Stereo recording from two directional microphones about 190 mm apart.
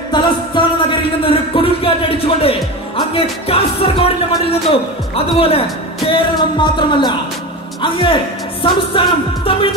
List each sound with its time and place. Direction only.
0.1 s music: 25° left (ahead or behind)
3.2 s a man's voice: 30° left (ahead or behind)